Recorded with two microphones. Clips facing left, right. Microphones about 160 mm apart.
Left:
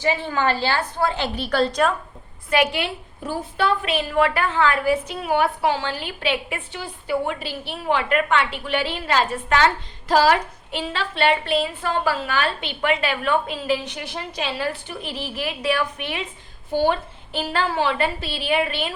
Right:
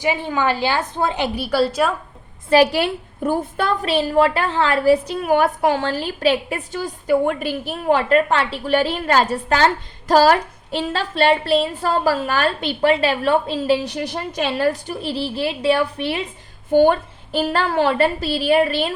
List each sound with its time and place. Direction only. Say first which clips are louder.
0.0 s a woman's voice: right 2 dB; 15° right (ahead or behind)
2.5 s a woman's voice: right 6 dB; 35° right (ahead or behind)
5.2 s a woman's voice: right 4 dB; 45° right (ahead or behind)
16.7 s a woman's voice: right 6 dB; 50° right (ahead or behind)